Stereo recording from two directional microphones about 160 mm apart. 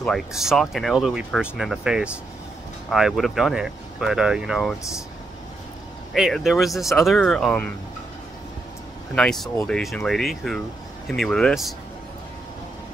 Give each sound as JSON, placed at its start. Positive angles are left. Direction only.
{"t": 0.0, "sound": "speech", "side_deg": 0}
{"t": 6.1, "sound": "speech", "side_deg": 0}
{"t": 9.1, "sound": "speech", "side_deg": 5}